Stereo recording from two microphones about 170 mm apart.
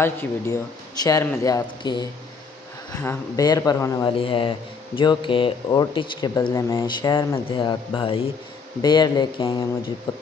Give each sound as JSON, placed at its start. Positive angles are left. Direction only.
{"t": 0.0, "sound": "speech", "side_deg": 15}
{"t": 4.2, "sound": "speech", "side_deg": 30}